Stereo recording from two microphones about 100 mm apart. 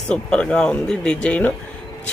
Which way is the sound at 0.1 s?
10° left (ahead or behind).